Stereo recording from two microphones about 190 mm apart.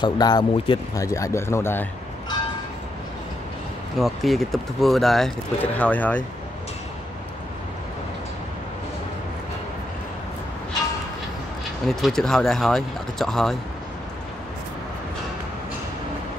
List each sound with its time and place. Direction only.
0.0 s speech: 20° left (ahead or behind)
4.0 s speech: centre (ahead or behind)
11.9 s speech: centre (ahead or behind)